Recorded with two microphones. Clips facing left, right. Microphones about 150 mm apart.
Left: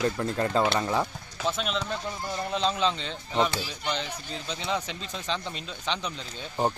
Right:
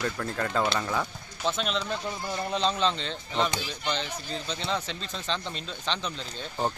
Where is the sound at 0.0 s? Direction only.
25° left (ahead or behind).